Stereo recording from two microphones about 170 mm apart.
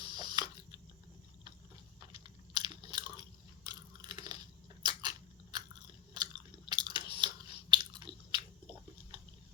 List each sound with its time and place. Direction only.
0.0 s a sound: 25° right (ahead or behind)
2.1 s biting: 25° right (ahead or behind)
3.6 s crunch: 25° right (ahead or behind)
4.8 s biting: 25° right (ahead or behind)
6.7 s chewing: 25° right (ahead or behind)